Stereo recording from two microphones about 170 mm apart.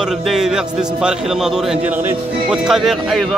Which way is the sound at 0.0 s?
5° right (ahead or behind).